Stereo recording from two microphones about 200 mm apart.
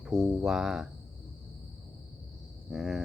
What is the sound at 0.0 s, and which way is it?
Speech, centre (ahead or behind).